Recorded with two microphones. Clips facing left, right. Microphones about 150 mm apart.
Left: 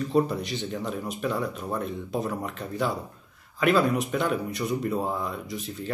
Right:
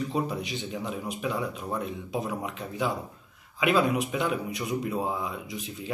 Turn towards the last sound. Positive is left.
turn(degrees=-5)  # may be behind; listen again after turning